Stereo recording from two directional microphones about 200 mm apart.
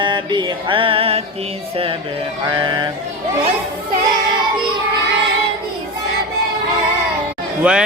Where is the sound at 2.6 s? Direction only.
20° right (ahead or behind).